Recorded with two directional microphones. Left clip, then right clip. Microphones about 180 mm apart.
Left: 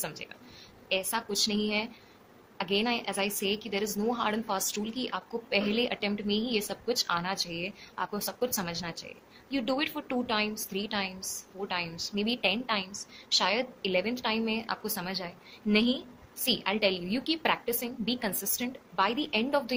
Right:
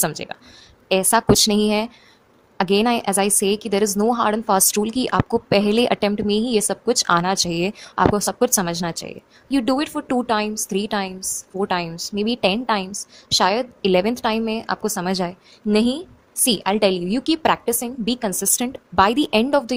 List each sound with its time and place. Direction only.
0.0 s a woman's voice: 60° right (ahead or behind)